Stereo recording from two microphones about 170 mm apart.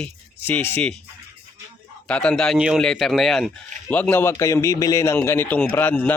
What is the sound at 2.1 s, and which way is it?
Speech, 5° left (ahead or behind).